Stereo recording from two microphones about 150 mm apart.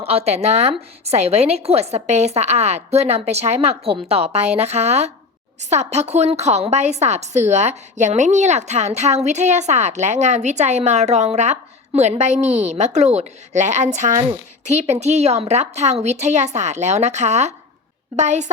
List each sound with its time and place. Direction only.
0.0 s a woman's voice: 40° right (ahead or behind)